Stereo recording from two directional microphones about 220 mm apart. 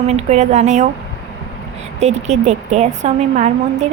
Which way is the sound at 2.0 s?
30° right (ahead or behind).